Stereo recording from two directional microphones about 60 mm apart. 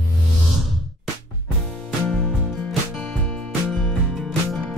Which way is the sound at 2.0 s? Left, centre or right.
Centre.